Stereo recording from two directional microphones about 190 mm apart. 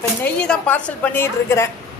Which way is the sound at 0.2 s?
5° left (ahead or behind).